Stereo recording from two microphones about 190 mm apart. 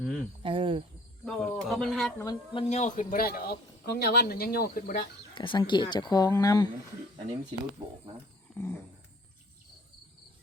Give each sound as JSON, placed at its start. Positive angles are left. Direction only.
{"t": 0.0, "sound": "cricket", "side_deg": 0}
{"t": 0.4, "sound": "speech", "side_deg": -25}
{"t": 1.2, "sound": "speech", "side_deg": 5}
{"t": 2.1, "sound": "speech", "side_deg": 20}
{"t": 2.6, "sound": "a man's voice", "side_deg": 40}
{"t": 5.3, "sound": "speech", "side_deg": 25}
{"t": 7.8, "sound": "speech", "side_deg": -25}
{"t": 8.5, "sound": "a sound", "side_deg": 10}